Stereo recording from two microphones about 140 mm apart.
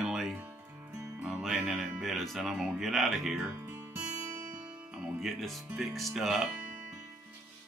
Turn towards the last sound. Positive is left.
turn(degrees=0)  # may be behind; listen again after turning